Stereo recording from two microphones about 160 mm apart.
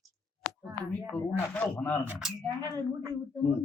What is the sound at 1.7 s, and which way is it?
Speech, 15° left (ahead or behind).